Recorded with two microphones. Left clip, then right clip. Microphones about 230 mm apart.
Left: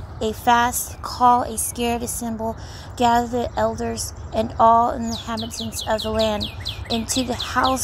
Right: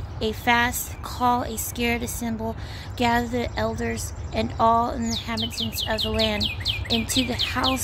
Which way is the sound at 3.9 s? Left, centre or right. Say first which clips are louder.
Left 4 dB; right.